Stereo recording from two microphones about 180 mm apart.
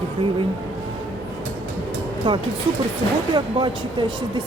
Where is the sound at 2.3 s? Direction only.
25° right (ahead or behind).